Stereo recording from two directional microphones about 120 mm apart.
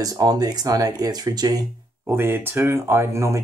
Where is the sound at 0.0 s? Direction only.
30° right (ahead or behind).